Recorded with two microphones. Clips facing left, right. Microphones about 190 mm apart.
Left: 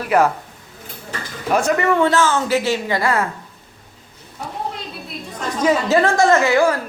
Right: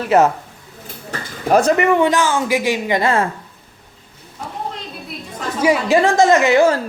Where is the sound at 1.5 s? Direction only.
40° right (ahead or behind).